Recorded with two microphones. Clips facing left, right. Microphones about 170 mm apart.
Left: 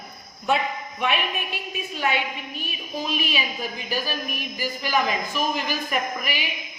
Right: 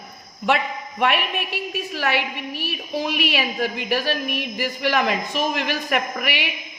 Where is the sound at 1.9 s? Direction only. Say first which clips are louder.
Right 1 dB; 80° right.